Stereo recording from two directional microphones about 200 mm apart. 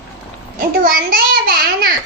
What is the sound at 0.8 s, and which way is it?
Child singing, 45° right (ahead or behind).